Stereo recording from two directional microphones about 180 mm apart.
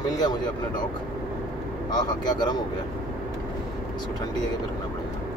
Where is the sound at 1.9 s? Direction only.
20° left (ahead or behind).